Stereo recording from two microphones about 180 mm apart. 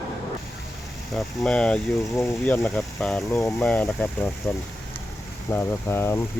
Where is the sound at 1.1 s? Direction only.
5° left (ahead or behind).